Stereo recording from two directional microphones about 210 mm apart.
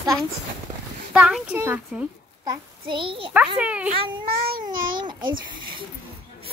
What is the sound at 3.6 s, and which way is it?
Speech, 5° right (ahead or behind).